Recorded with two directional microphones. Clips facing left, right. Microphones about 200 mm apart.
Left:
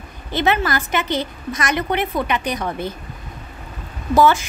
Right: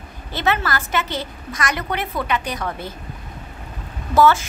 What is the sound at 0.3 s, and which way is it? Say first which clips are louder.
A woman's voice: left 3 dB; 15° left (ahead or behind).